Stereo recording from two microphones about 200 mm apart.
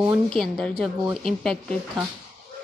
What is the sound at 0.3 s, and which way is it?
Speech, 5° left (ahead or behind).